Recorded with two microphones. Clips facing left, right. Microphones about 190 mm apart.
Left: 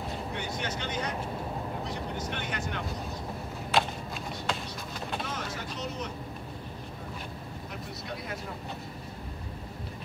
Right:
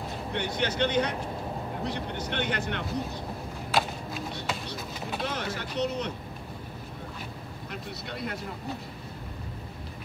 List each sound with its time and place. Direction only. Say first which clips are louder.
0.3 s speech: right 9 dB; 65° right (ahead or behind)
3.7 s run: even; 5° right (ahead or behind)
5.2 s vehicle: right 4 dB; 65° right (ahead or behind)